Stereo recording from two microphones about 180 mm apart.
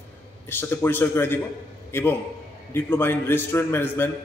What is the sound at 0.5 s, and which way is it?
A man's voice, 10° left (ahead or behind).